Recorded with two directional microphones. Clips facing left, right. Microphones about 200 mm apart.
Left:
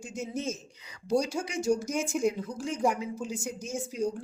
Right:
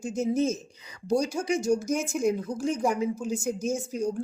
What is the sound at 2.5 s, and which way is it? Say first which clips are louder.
Speech: right 2 dB; 45° right (ahead or behind).